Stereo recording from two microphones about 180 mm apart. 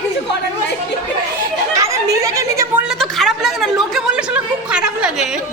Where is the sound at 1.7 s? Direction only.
15° right (ahead or behind).